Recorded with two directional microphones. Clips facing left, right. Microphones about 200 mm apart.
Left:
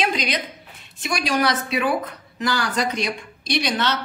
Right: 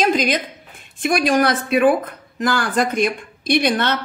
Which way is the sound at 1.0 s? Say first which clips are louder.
Right 6 dB; 50° right (ahead or behind).